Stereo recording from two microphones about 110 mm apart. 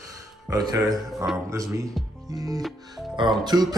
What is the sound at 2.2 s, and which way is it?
Music, 35° right (ahead or behind).